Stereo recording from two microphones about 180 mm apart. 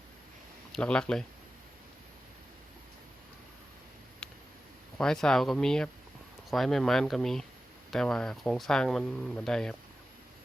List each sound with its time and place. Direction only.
0.7 s speech: 5° left (ahead or behind)
4.9 s speech: 5° left (ahead or behind)